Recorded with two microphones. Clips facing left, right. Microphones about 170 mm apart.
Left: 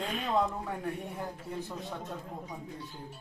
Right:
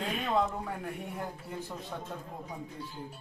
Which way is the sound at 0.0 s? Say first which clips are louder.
Even; 5° right (ahead or behind).